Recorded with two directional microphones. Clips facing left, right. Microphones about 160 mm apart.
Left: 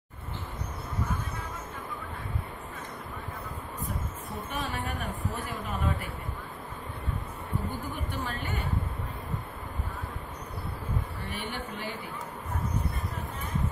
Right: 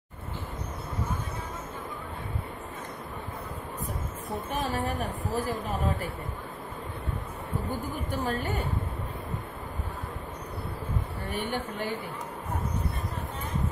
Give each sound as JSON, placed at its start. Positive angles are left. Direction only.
{"t": 4.6, "sound": "speech", "side_deg": -40}
{"t": 8.1, "sound": "speech", "side_deg": -40}
{"t": 11.2, "sound": "a woman's voice", "side_deg": -50}